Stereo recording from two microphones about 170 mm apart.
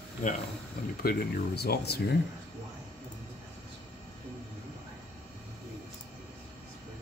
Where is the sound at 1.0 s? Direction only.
70° left (ahead or behind).